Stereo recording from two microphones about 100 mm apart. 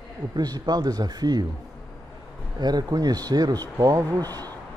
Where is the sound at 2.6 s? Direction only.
45° right (ahead or behind).